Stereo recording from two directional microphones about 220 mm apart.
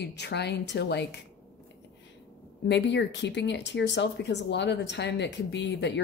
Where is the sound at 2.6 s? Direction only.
55° left (ahead or behind).